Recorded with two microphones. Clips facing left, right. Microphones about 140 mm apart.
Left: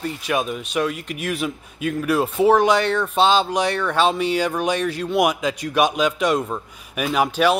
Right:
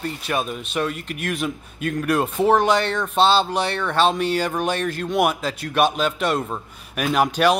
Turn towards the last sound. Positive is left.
turn(degrees=10)  # may be behind; listen again after turning